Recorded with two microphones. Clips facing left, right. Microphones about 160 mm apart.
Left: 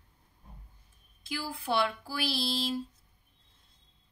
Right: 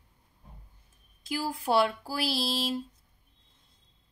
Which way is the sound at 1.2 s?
40° right (ahead or behind).